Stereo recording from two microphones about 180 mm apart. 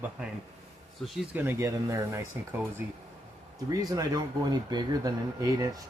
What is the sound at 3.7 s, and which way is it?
Speech, 20° right (ahead or behind).